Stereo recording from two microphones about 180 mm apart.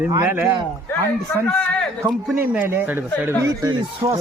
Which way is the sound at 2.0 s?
10° right (ahead or behind).